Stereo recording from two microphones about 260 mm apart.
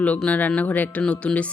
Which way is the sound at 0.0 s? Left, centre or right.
Centre.